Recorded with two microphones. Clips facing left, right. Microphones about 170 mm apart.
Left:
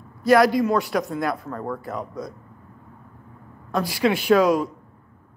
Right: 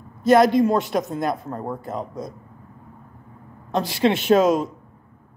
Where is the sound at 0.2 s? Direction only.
20° right (ahead or behind).